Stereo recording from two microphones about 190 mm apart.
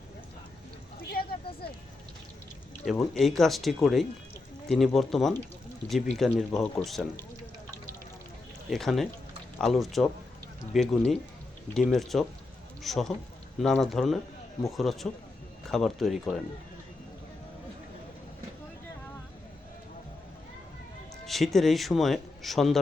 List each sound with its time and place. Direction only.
2.8 s speech: centre (ahead or behind)
8.7 s speech: centre (ahead or behind)
21.2 s speech: centre (ahead or behind)